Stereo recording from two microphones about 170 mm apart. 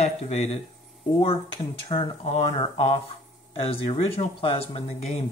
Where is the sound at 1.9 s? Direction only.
35° left (ahead or behind).